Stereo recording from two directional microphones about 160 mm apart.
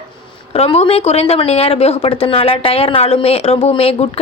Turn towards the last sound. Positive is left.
turn(degrees=40)  # may be behind; listen again after turning